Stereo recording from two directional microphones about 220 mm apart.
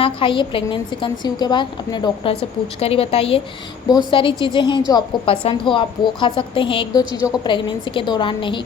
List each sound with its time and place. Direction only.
0.0 s a woman's voice: 25° left (ahead or behind)